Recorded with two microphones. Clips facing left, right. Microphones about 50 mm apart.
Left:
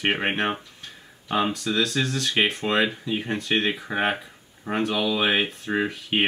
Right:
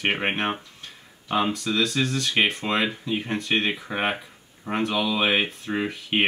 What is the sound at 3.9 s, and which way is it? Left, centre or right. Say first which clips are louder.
Speech: left 2 dB; centre.